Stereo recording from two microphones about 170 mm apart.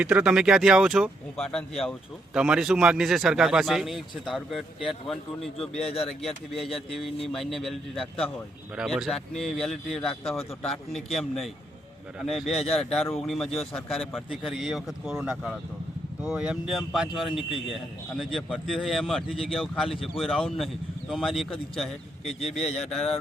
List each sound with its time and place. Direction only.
0.0 s speech: 5° right (ahead or behind)
6.6 s speech: 35° left (ahead or behind)
7.3 s speech: centre (ahead or behind)
22.5 s speech: 5° left (ahead or behind)